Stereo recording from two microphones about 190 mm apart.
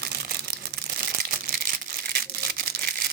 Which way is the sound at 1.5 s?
55° right (ahead or behind).